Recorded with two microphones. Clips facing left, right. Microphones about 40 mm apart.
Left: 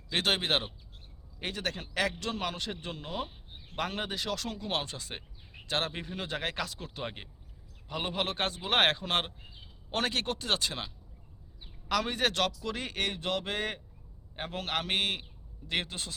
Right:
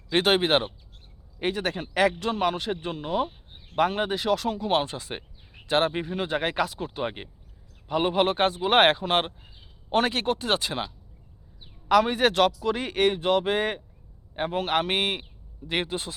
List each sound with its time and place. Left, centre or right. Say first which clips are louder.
0.1 s a man's voice: right 8 dB; centre
11.9 s a man's voice: right 9 dB; centre